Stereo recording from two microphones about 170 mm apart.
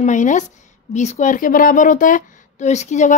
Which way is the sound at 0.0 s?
45° left (ahead or behind).